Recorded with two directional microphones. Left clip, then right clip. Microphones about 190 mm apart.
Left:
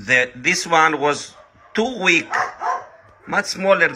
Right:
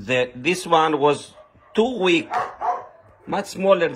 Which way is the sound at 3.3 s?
25° left (ahead or behind).